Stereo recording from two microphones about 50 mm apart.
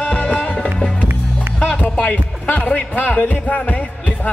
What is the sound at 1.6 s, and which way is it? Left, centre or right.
Music, left.